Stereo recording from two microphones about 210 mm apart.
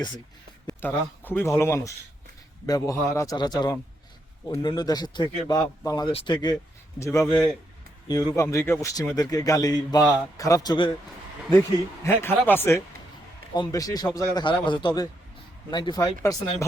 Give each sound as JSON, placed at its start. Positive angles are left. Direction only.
{"t": 0.7, "sound": "a man's voice", "side_deg": 10}
{"t": 12.0, "sound": "a man's voice", "side_deg": 10}